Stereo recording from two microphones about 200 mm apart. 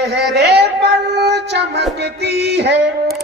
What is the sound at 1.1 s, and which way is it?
Music, 55° right (ahead or behind).